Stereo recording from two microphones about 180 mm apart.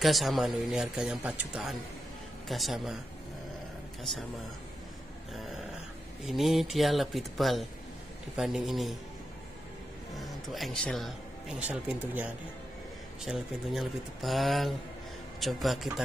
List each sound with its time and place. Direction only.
0.0 s speech: centre (ahead or behind)
6.2 s speech: centre (ahead or behind)
10.1 s a man's voice: centre (ahead or behind)
13.2 s speech: centre (ahead or behind)